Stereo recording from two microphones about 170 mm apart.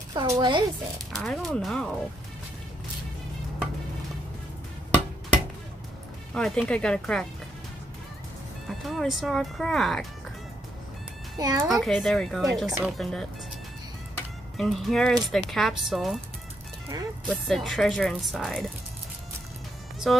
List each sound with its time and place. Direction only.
0.1 s speech: 25° right (ahead or behind)
1.1 s speech: centre (ahead or behind)
6.3 s speech: 5° left (ahead or behind)
8.6 s speech: centre (ahead or behind)
11.3 s speech: 20° right (ahead or behind)
11.8 s speech: centre (ahead or behind)
14.6 s speech: centre (ahead or behind)
16.9 s speech: 25° right (ahead or behind)
17.5 s speech: centre (ahead or behind)
20.1 s speech: centre (ahead or behind)